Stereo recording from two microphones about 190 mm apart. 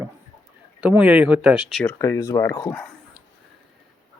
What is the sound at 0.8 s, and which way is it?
Speech, 5° right (ahead or behind).